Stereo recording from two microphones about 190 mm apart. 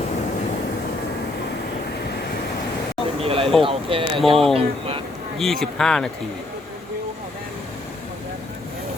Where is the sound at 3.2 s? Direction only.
30° right (ahead or behind).